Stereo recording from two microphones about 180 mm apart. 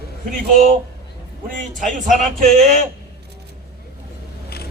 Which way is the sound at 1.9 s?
45° right (ahead or behind).